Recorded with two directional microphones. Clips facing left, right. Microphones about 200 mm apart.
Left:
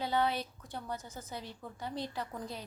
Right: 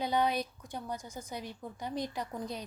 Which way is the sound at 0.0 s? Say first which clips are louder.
Right 2 dB; 15° right (ahead or behind).